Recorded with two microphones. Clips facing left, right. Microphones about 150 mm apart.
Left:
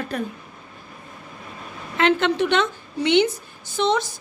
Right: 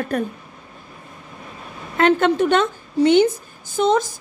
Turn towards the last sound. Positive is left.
turn(degrees=-45)  # may be behind; listen again after turning